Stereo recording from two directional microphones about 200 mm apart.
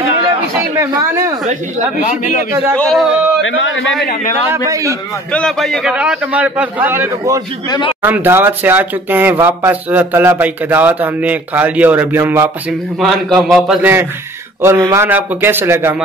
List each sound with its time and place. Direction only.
0.6 s a man's voice: 15° right (ahead or behind)
2.0 s a man's voice: 40° left (ahead or behind)
2.7 s a man's voice: 5° left (ahead or behind)
3.4 s a man's voice: 75° left (ahead or behind)
4.0 s speech: 50° left (ahead or behind)
4.6 s speech: 15° right (ahead or behind)
5.3 s a man's voice: 5° left (ahead or behind)